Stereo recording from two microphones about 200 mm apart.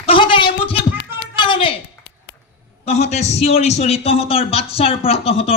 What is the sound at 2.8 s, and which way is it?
A man's voice, 35° left (ahead or behind).